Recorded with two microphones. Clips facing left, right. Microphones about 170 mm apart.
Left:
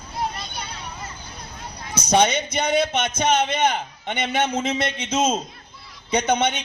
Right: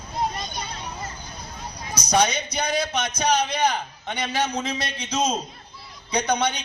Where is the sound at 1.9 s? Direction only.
25° left (ahead or behind).